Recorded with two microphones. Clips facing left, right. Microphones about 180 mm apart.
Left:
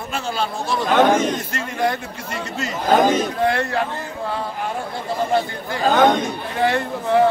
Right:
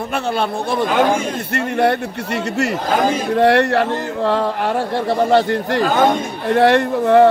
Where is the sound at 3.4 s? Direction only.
70° right (ahead or behind).